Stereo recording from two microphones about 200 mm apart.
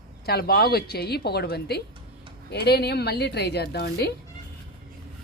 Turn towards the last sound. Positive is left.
turn(degrees=55)  # may be behind; listen again after turning